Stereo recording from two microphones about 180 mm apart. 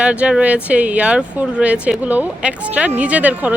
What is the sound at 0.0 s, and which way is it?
Speech, 5° right (ahead or behind).